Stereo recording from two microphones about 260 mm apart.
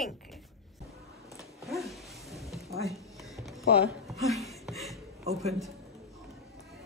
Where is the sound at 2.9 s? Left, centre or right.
Centre.